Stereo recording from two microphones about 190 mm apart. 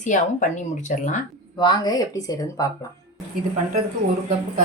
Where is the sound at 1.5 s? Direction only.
20° left (ahead or behind).